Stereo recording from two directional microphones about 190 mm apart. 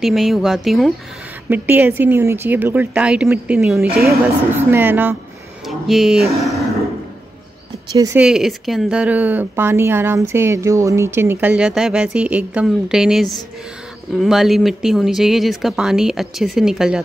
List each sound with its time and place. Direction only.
0.0 s a woman's voice: centre (ahead or behind)
7.9 s speech: 20° right (ahead or behind)
8.2 s a woman's voice: centre (ahead or behind)